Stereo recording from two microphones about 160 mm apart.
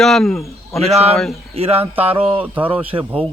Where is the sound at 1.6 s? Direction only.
40° right (ahead or behind).